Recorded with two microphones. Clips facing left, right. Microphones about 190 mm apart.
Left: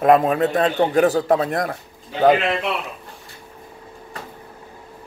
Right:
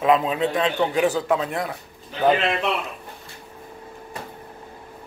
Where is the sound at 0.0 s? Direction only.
50° left (ahead or behind).